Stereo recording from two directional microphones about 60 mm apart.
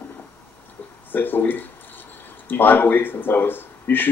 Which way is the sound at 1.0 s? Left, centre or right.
Left.